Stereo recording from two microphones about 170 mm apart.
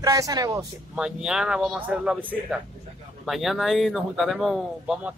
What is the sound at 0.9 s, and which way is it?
Speech, 5° right (ahead or behind).